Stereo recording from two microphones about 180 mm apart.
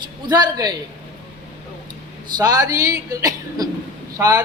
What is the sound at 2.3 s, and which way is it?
A woman's voice, 20° right (ahead or behind).